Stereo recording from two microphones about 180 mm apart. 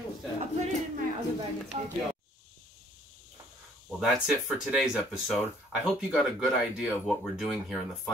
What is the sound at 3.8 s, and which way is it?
Speech, centre (ahead or behind).